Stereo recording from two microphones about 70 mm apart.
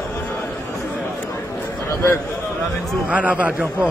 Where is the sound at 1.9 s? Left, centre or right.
Left.